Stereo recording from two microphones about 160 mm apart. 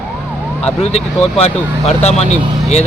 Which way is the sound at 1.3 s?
40° left (ahead or behind).